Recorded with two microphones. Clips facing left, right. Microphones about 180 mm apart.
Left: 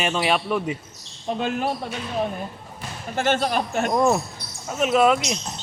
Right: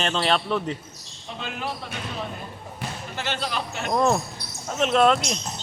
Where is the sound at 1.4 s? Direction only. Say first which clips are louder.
Left 7 dB; 45° left (ahead or behind).